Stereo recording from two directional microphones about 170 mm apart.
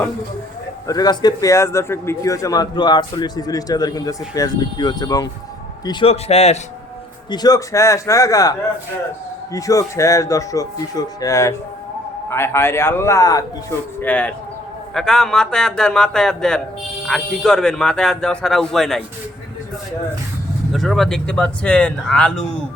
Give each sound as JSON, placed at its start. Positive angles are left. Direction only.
{"t": 0.9, "sound": "a man's voice", "side_deg": 25}
{"t": 7.3, "sound": "a man's voice", "side_deg": 25}
{"t": 14.0, "sound": "speech", "side_deg": 10}
{"t": 20.7, "sound": "speech", "side_deg": 0}